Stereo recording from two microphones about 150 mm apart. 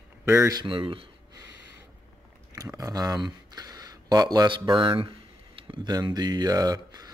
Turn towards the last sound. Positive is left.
turn(degrees=-25)  # may be behind; listen again after turning